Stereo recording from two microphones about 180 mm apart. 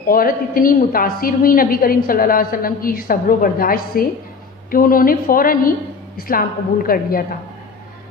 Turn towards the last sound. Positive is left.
turn(degrees=55)  # may be behind; listen again after turning